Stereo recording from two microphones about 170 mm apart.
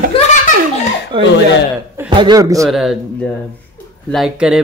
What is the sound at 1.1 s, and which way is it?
Speech, 30° right (ahead or behind).